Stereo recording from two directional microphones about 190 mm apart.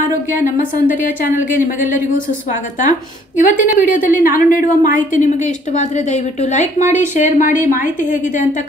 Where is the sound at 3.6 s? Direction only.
45° left (ahead or behind).